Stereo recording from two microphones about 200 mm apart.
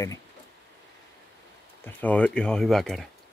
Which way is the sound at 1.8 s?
5° left (ahead or behind).